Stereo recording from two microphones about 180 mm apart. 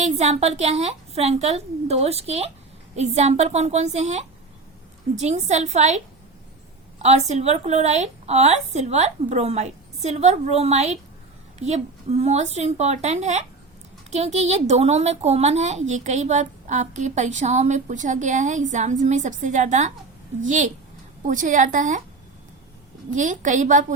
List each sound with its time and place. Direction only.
0.0 s a woman's voice: 40° right (ahead or behind)
7.0 s a woman's voice: 40° right (ahead or behind)
23.1 s a woman's voice: 45° right (ahead or behind)